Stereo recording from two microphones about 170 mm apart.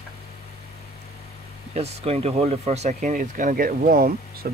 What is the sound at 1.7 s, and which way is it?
Speech, 40° right (ahead or behind).